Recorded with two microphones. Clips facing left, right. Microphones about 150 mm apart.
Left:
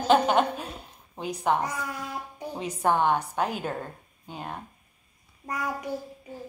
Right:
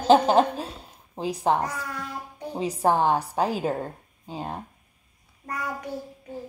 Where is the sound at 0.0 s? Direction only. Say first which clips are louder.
Right 3 dB; 35° right (ahead or behind).